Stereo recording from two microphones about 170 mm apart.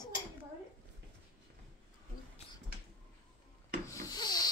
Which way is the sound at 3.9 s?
20° left (ahead or behind).